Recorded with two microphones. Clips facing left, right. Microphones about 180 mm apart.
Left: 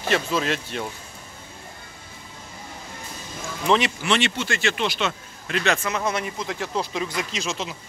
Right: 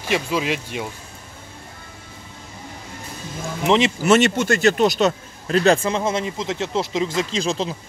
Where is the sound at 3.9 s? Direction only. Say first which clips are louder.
Right 8 dB; 45° right (ahead or behind).